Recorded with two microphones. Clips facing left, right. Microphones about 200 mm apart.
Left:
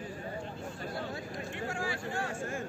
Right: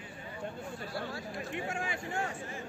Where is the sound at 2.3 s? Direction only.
45° left (ahead or behind).